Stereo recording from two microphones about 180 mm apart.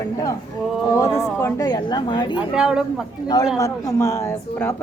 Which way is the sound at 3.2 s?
20° left (ahead or behind).